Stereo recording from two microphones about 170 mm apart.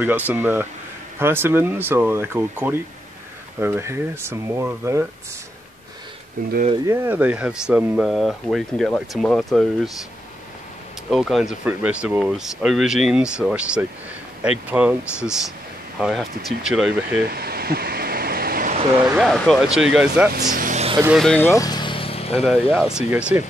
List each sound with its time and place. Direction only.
0.0 s speech: 10° right (ahead or behind)
6.4 s speech: 55° right (ahead or behind)
6.9 s speech: 10° right (ahead or behind)
11.1 s speech: centre (ahead or behind)
16.0 s speech: 5° right (ahead or behind)
17.3 s a sound: 65° right (ahead or behind)
19.1 s speech: centre (ahead or behind)
20.5 s vehicle: 50° right (ahead or behind)
21.2 s speech: 5° left (ahead or behind)
21.5 s vehicle: 20° left (ahead or behind)
22.4 s speech: 5° right (ahead or behind)